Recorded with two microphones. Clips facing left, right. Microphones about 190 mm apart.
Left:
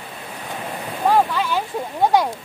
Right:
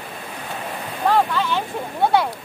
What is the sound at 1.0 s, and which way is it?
Boat, 10° left (ahead or behind).